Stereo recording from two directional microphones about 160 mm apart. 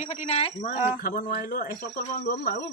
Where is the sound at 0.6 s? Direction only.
55° left (ahead or behind).